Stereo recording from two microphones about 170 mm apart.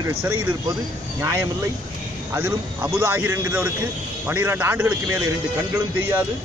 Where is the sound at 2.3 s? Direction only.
15° right (ahead or behind).